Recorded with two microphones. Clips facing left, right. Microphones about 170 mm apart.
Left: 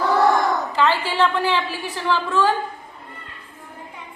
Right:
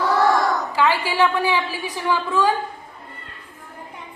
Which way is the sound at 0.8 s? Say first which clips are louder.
Right 1 dB; 10° right (ahead or behind).